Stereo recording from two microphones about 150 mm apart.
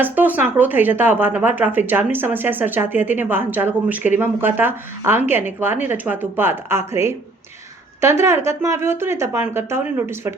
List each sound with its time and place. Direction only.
0.0 s speech: 10° right (ahead or behind)